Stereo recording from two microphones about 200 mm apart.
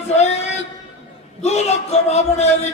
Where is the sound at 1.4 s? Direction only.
35° left (ahead or behind).